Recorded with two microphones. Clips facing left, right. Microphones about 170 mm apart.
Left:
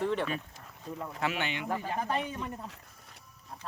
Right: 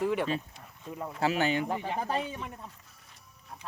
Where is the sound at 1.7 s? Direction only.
25° right (ahead or behind).